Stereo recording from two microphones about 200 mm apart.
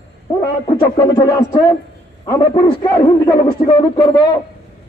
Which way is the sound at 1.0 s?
20° left (ahead or behind).